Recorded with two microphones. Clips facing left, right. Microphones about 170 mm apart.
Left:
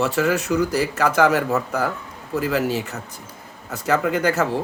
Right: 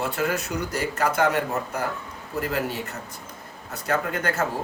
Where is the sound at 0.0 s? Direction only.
90° left.